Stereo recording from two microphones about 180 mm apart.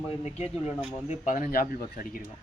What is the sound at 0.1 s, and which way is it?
Speech, 35° left (ahead or behind).